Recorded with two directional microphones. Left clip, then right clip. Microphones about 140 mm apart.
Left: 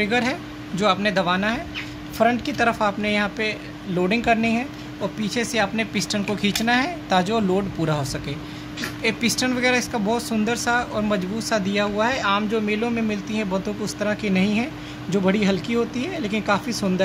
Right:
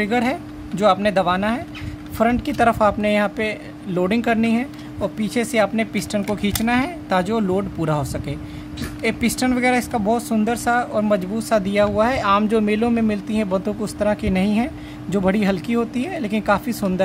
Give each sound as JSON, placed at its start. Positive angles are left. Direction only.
{"t": 0.0, "sound": "speech", "side_deg": -65}